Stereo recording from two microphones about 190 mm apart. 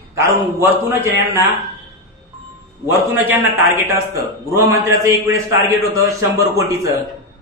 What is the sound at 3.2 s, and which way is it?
A man's voice, 10° right (ahead or behind).